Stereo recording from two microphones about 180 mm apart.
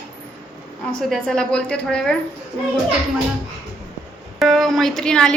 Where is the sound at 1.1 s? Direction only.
5° left (ahead or behind).